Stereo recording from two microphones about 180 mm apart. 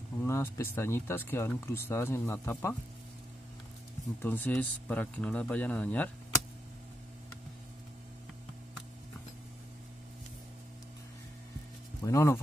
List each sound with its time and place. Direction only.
0.3 s speech: 15° left (ahead or behind)
4.2 s speech: 10° left (ahead or behind)
12.0 s speech: 15° left (ahead or behind)